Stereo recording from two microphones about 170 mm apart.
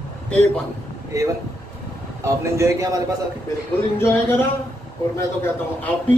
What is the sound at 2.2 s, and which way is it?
Speech, 15° right (ahead or behind).